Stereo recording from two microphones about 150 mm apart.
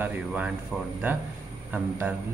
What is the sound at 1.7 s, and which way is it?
Speech, 10° right (ahead or behind).